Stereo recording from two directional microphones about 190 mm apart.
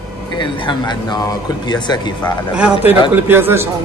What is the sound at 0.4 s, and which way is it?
Speech, 25° left (ahead or behind).